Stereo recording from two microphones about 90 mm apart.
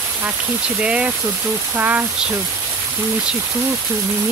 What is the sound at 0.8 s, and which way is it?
Speech, 15° right (ahead or behind).